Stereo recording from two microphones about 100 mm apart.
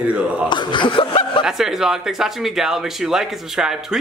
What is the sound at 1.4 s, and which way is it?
Speech, 5° right (ahead or behind).